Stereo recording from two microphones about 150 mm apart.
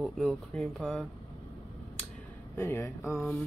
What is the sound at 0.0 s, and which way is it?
Speech, centre (ahead or behind).